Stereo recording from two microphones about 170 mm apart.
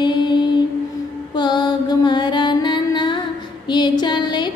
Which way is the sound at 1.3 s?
25° left (ahead or behind).